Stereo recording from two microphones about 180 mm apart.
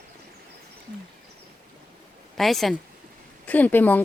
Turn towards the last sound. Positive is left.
turn(degrees=10)  # may be behind; listen again after turning